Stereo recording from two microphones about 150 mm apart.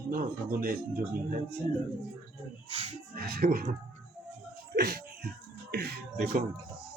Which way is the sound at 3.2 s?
90° right.